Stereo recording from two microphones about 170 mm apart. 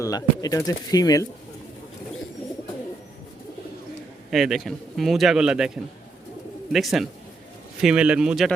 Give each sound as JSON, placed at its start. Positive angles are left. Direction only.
{"t": 0.0, "sound": "speech", "side_deg": 20}
{"t": 4.3, "sound": "a man's voice", "side_deg": 0}